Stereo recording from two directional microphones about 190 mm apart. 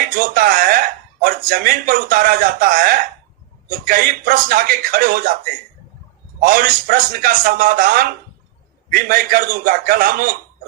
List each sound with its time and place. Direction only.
0.0 s a man's voice: 50° right (ahead or behind)
6.4 s a man's voice: 50° right (ahead or behind)